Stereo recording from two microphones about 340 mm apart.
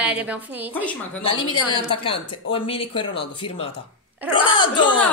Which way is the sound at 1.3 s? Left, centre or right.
Centre.